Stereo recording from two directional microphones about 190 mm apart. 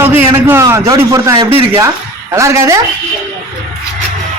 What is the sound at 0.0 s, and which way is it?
A man's voice, 10° right (ahead or behind).